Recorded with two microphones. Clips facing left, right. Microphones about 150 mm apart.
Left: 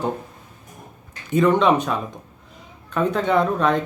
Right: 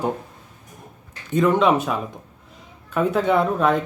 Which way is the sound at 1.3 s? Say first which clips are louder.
Left 1 dB; centre (ahead or behind).